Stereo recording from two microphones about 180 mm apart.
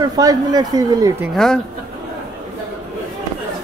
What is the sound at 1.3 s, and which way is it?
Speech, centre (ahead or behind).